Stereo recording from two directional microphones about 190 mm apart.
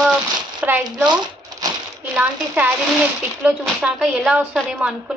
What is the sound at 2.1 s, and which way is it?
A woman's voice, 10° right (ahead or behind).